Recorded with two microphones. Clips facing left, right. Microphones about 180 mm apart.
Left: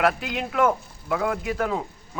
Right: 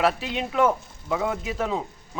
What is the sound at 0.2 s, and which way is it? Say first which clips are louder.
A man's voice: even; centre (ahead or behind).